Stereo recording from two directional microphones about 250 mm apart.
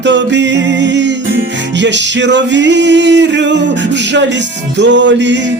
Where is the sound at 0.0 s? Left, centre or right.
Right.